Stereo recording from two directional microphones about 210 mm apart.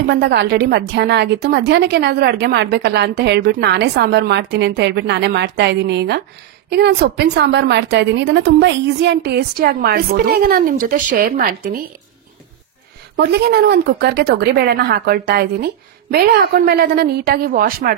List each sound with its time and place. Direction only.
0.2 s a woman's voice: 55° right (ahead or behind)
13.1 s a woman's voice: 55° right (ahead or behind)